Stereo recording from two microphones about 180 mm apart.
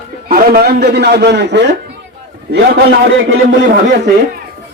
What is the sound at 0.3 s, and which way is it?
Speech, 55° right (ahead or behind).